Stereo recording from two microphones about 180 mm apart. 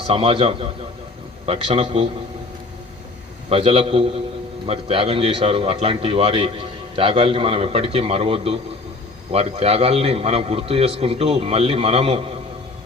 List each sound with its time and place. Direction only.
0.1 s a man's voice: 30° right (ahead or behind)
3.5 s a man's voice: 30° right (ahead or behind)